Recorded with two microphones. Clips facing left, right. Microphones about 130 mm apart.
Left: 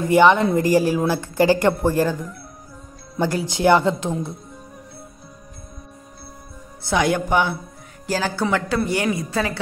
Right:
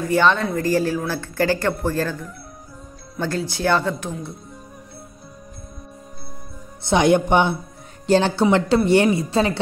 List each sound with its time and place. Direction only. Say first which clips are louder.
0.0 s speech: left 4 dB; 15° left (ahead or behind)
6.8 s speech: right 4 dB; 25° right (ahead or behind)